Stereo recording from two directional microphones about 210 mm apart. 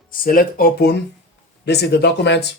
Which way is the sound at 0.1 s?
40° left (ahead or behind).